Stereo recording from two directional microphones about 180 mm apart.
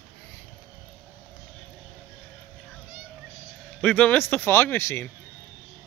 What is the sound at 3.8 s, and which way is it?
Speech, 5° left (ahead or behind).